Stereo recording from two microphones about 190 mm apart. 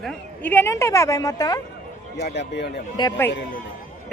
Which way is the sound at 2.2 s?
60° left (ahead or behind).